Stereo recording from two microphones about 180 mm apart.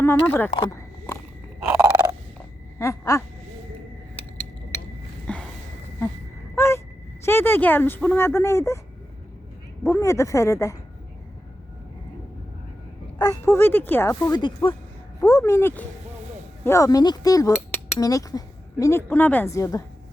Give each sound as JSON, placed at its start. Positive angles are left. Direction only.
{"t": 0.0, "sound": "cutlery", "side_deg": 15}
{"t": 0.7, "sound": "clip-clop", "side_deg": 15}
{"t": 1.6, "sound": "frog", "side_deg": -15}
{"t": 2.7, "sound": "a sound", "side_deg": 15}
{"t": 5.2, "sound": "a sound", "side_deg": 5}
{"t": 6.6, "sound": "a sound", "side_deg": 15}
{"t": 7.3, "sound": "cutlery", "side_deg": 10}
{"t": 9.8, "sound": "cutlery", "side_deg": 15}
{"t": 13.1, "sound": "cutlery", "side_deg": 20}